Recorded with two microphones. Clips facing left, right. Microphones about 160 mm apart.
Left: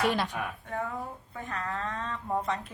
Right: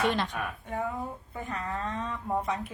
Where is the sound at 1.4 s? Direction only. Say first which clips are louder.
Even; 10° right (ahead or behind).